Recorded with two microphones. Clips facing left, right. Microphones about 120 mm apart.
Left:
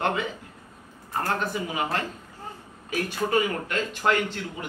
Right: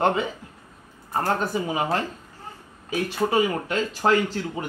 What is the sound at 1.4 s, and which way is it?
Speech, 30° right (ahead or behind).